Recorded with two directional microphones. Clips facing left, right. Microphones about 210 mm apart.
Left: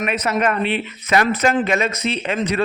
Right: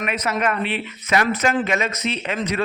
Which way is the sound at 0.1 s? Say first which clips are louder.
Left 2 dB; 30° left (ahead or behind).